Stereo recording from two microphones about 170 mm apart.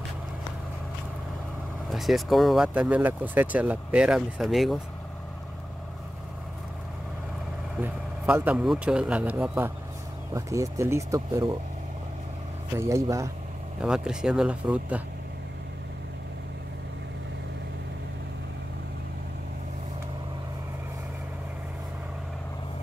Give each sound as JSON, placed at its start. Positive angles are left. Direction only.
{"t": 1.9, "sound": "speech", "side_deg": 0}
{"t": 7.8, "sound": "a man's voice", "side_deg": -10}
{"t": 12.7, "sound": "speech", "side_deg": -15}
{"t": 13.7, "sound": "speech", "side_deg": -5}